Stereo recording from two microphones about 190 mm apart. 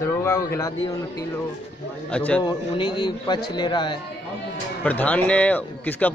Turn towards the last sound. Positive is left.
turn(degrees=10)  # may be behind; listen again after turning